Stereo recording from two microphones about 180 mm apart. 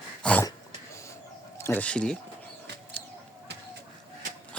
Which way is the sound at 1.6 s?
10° left (ahead or behind).